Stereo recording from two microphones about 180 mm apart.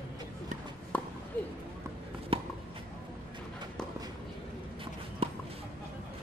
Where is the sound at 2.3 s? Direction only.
30° right (ahead or behind).